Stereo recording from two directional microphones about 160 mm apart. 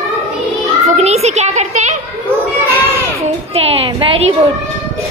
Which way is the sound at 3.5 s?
40° right (ahead or behind).